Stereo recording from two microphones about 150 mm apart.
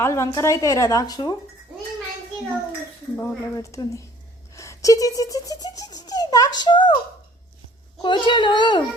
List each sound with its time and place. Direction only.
0.0 s a woman's voice: 20° left (ahead or behind)
3.2 s a woman's voice: 20° left (ahead or behind)
8.0 s a child's voice: 30° left (ahead or behind)